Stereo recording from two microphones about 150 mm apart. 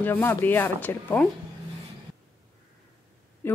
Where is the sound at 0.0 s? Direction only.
15° left (ahead or behind).